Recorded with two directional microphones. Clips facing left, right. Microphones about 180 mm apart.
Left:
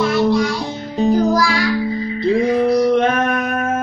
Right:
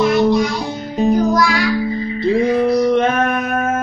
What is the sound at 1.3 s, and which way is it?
Music, 30° left (ahead or behind).